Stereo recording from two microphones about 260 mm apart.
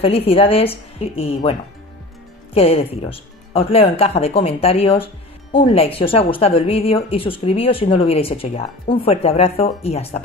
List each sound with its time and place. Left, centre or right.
0.0 s speech: left